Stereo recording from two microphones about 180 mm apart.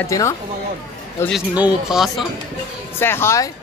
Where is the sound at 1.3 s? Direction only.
5° right (ahead or behind).